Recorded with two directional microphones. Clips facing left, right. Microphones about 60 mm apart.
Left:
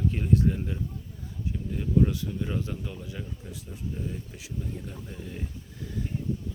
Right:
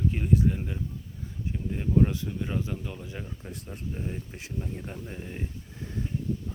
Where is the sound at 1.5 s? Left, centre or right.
Right.